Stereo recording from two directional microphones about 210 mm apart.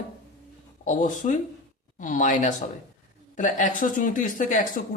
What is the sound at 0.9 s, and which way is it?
Speech, 35° left (ahead or behind).